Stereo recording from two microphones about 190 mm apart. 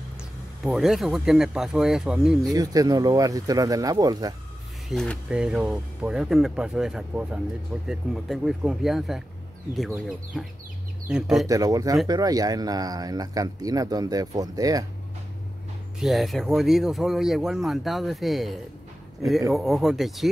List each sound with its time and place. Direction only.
0.2 s speech: centre (ahead or behind)
2.5 s speech: 20° right (ahead or behind)
4.8 s speech: 5° left (ahead or behind)
11.4 s speech: 20° right (ahead or behind)
16.0 s speech: centre (ahead or behind)